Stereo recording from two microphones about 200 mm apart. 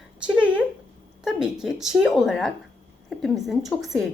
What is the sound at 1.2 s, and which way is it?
A woman's voice, 5° right (ahead or behind).